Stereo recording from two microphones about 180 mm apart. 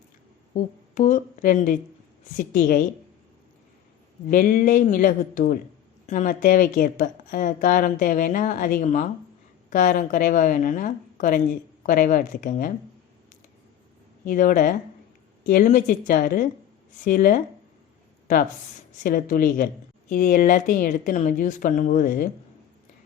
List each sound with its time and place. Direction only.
0.5 s a woman's voice: 45° left (ahead or behind)
4.3 s a woman's voice: 50° left (ahead or behind)
14.3 s a woman's voice: 45° left (ahead or behind)
19.0 s a woman's voice: 50° left (ahead or behind)